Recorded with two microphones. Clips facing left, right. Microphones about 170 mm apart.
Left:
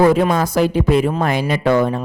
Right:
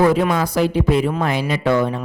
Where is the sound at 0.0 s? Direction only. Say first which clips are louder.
Left 2 dB; 45° left (ahead or behind).